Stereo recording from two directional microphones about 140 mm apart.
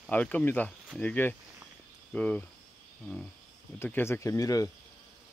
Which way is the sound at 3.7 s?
15° left (ahead or behind).